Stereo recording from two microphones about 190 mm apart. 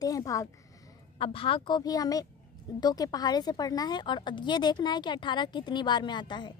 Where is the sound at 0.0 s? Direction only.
20° left (ahead or behind).